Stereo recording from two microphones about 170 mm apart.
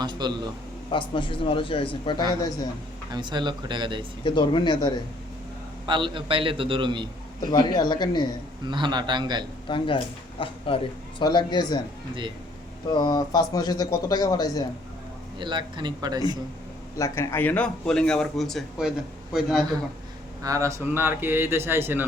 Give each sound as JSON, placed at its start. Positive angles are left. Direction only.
{"t": 0.0, "sound": "a man's voice", "side_deg": -25}
{"t": 0.9, "sound": "a man's voice", "side_deg": 30}
{"t": 3.1, "sound": "a man's voice", "side_deg": -25}
{"t": 4.2, "sound": "speech", "side_deg": 30}
{"t": 5.8, "sound": "a man's voice", "side_deg": -30}
{"t": 7.5, "sound": "speech", "side_deg": 25}
{"t": 8.6, "sound": "a man's voice", "side_deg": -25}
{"t": 9.6, "sound": "a man's voice", "side_deg": 30}
{"t": 12.9, "sound": "speech", "side_deg": 25}
{"t": 15.4, "sound": "a man's voice", "side_deg": -25}
{"t": 16.9, "sound": "a man's voice", "side_deg": 15}
{"t": 20.4, "sound": "speech", "side_deg": -20}